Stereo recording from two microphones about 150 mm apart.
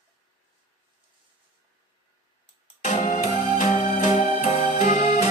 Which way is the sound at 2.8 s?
55° left (ahead or behind).